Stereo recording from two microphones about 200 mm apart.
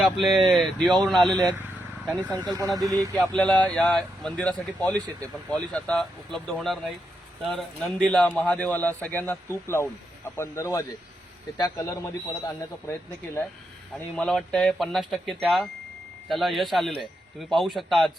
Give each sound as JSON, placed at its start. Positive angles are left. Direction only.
{"t": 0.0, "sound": "a man's voice", "side_deg": 0}
{"t": 2.3, "sound": "speech", "side_deg": -15}
{"t": 3.2, "sound": "a man's voice", "side_deg": 5}
{"t": 14.2, "sound": "a man's voice", "side_deg": 0}